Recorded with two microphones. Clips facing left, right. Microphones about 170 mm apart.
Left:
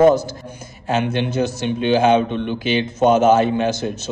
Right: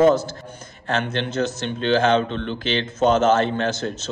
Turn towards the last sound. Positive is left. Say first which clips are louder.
# left 4 dB
turn(degrees=10)  # may be behind; listen again after turning